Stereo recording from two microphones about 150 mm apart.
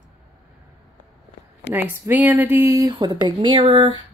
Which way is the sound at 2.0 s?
10° right (ahead or behind).